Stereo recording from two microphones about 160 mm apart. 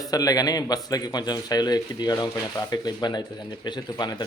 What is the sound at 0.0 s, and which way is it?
Speech, 25° left (ahead or behind).